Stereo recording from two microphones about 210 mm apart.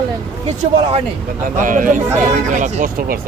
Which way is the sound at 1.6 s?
40° right (ahead or behind).